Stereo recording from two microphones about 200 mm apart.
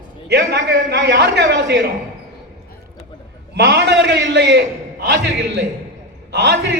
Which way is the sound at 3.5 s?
55° right (ahead or behind).